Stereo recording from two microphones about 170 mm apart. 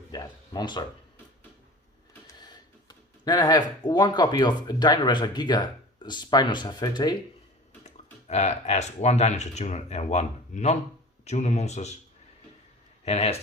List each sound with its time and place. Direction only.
0.1 s a sound: 25° left (ahead or behind)
2.2 s speech: 25° left (ahead or behind)
7.9 s a man's voice: 40° left (ahead or behind)
13.1 s a man's voice: 40° left (ahead or behind)